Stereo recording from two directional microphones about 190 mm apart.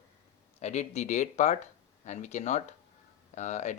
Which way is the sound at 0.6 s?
35° left (ahead or behind).